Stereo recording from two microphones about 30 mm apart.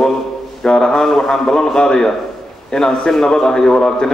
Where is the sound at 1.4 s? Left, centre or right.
Left.